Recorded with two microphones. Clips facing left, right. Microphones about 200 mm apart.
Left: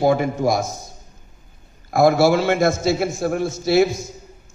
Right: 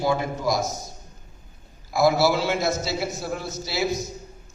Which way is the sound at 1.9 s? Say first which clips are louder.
Left 5 dB; 55° left (ahead or behind).